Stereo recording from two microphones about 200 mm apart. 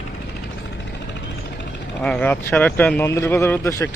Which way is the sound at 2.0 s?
5° left (ahead or behind).